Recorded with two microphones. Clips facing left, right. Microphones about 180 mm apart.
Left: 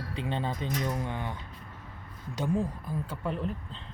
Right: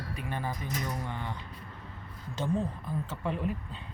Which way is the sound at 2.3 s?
15° left (ahead or behind).